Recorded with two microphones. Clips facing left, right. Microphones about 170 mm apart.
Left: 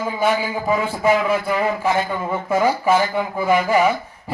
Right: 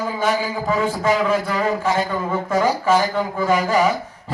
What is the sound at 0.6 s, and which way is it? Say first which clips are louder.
A man's voice: left 2 dB; 10° left (ahead or behind).